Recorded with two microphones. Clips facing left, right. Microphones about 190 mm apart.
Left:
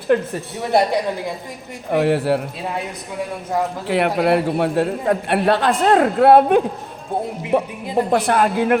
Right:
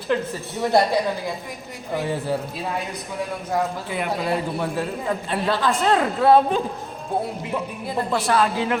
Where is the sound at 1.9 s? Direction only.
75° left (ahead or behind).